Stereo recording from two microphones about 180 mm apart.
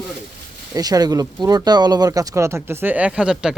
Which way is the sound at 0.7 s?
20° right (ahead or behind).